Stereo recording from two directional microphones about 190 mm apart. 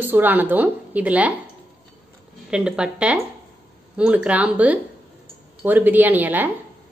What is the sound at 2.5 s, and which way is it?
A woman's voice, 5° right (ahead or behind).